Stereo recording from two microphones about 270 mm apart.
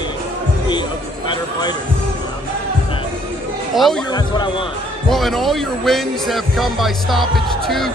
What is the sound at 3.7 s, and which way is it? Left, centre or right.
Speech, centre.